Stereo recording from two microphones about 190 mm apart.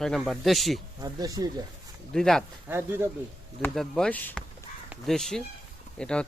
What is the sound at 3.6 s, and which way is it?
Speech, 5° left (ahead or behind).